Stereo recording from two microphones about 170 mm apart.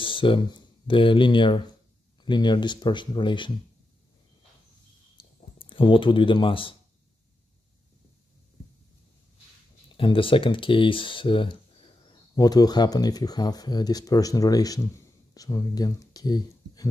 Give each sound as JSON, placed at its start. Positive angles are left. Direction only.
{"t": 0.0, "sound": "speech", "side_deg": 30}
{"t": 5.2, "sound": "a sound", "side_deg": 30}
{"t": 5.6, "sound": "speech", "side_deg": 30}
{"t": 9.9, "sound": "speech", "side_deg": 30}